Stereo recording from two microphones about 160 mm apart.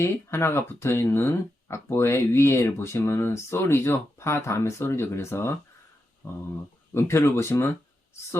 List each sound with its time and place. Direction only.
0.0 s speech: 15° left (ahead or behind)